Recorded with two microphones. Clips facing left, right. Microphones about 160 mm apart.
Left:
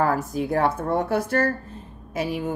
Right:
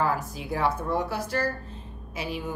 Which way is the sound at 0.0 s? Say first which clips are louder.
Left 5 dB; 50° left (ahead or behind).